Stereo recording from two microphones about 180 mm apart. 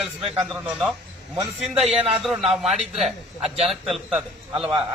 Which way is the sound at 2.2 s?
Centre (ahead or behind).